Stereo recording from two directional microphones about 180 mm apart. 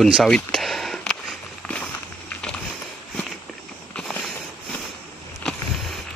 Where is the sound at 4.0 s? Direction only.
5° left (ahead or behind).